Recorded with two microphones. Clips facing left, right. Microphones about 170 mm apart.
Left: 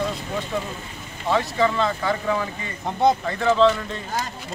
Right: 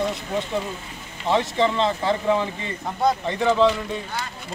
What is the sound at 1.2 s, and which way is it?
Speech, 25° right (ahead or behind).